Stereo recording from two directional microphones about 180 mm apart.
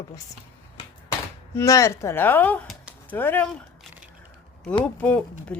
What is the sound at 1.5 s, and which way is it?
A woman's voice, 15° left (ahead or behind).